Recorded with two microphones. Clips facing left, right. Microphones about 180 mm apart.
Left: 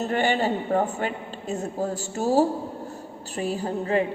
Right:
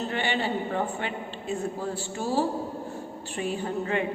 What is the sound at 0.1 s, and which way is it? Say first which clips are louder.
A woman's voice: left 7 dB; 45° left (ahead or behind).